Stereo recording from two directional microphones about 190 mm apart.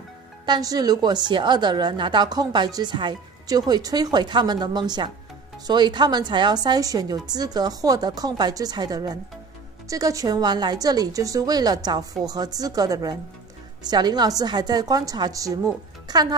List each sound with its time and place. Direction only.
0.5 s a woman's voice: 20° right (ahead or behind)